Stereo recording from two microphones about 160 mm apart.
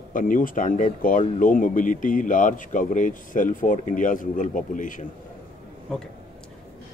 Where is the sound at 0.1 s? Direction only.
55° left (ahead or behind).